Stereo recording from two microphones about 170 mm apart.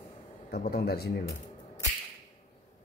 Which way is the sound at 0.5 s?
65° left (ahead or behind).